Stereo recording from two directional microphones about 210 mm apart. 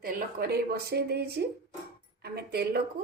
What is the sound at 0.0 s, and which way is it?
Speech, 45° right (ahead or behind).